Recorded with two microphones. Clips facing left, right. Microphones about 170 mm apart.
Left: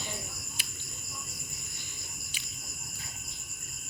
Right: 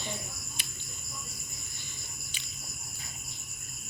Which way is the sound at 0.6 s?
5° left (ahead or behind).